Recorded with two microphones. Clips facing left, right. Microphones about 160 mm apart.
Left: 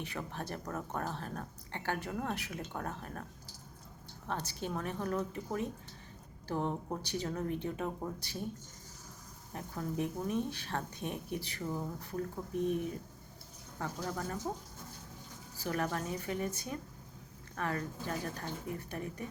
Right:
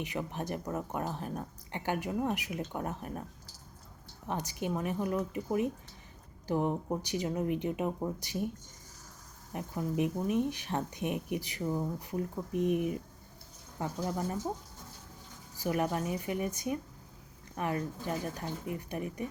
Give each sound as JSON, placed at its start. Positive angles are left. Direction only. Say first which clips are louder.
{"t": 0.0, "sound": "speech", "louder": "right 5 dB", "side_deg": -15}
{"t": 4.3, "sound": "speech", "louder": "right 4 dB", "side_deg": -15}
{"t": 9.5, "sound": "speech", "louder": "right 4 dB", "side_deg": -15}
{"t": 15.5, "sound": "speech", "louder": "right 4 dB", "side_deg": -15}